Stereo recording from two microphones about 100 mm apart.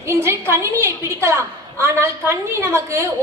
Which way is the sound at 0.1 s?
25° right (ahead or behind).